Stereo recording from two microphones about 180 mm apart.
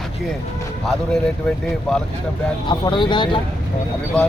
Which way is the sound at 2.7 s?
25° left (ahead or behind).